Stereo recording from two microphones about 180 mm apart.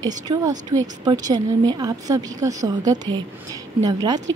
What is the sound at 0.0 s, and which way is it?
A woman's voice, 20° right (ahead or behind).